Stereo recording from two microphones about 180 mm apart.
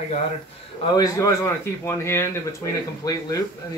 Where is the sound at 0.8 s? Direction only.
20° left (ahead or behind).